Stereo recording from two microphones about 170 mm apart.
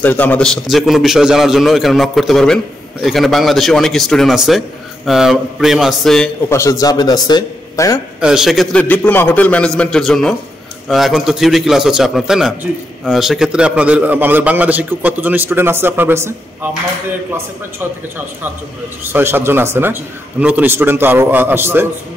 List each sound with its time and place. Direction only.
0.0 s a man's voice: 10° left (ahead or behind)
6.5 s a man's voice: 20° left (ahead or behind)
8.2 s a man's voice: 5° right (ahead or behind)
17.7 s a man's voice: 10° right (ahead or behind)